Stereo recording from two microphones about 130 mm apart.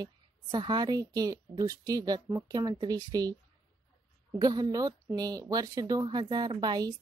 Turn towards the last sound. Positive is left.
turn(degrees=-35)  # may be behind; listen again after turning